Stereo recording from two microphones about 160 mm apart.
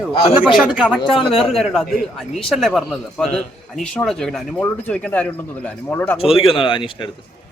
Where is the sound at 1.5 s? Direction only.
Centre (ahead or behind).